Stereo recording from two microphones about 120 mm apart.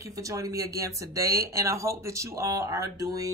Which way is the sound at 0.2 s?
30° right (ahead or behind).